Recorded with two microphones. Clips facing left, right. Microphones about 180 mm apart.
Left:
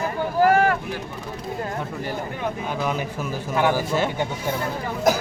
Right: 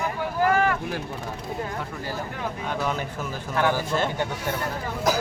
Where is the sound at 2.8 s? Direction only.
10° left (ahead or behind).